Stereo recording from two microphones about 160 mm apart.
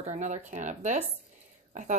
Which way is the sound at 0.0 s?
45° right (ahead or behind).